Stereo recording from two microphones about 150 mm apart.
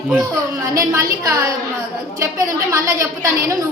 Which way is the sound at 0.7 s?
20° right (ahead or behind).